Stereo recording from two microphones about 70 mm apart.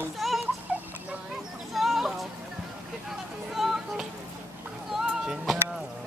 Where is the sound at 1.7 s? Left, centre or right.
Centre.